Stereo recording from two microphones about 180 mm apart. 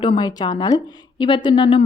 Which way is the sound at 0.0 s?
25° left (ahead or behind).